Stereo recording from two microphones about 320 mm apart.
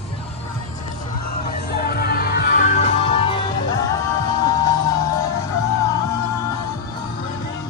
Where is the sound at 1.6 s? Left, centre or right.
Left; by 4.7 s centre.